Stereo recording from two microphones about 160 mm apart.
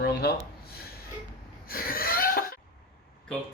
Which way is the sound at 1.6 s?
65° left (ahead or behind).